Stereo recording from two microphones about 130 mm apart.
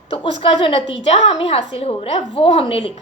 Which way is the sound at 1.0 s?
55° left (ahead or behind).